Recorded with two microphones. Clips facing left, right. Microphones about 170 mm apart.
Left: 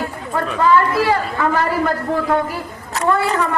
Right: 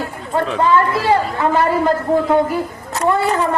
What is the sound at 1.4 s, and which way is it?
Speech, 25° right (ahead or behind).